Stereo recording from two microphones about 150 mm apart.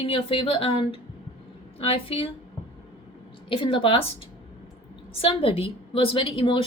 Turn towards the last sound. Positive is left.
turn(degrees=35)  # may be behind; listen again after turning